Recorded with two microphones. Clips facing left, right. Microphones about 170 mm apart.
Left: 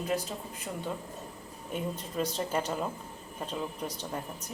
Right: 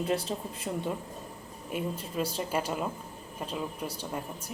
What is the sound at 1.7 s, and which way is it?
Speech, 5° right (ahead or behind).